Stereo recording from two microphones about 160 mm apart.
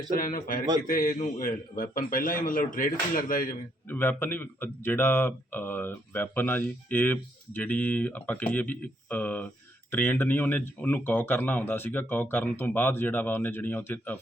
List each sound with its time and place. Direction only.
0.1 s a man's voice: 65° left (ahead or behind)
3.8 s speech: 10° left (ahead or behind)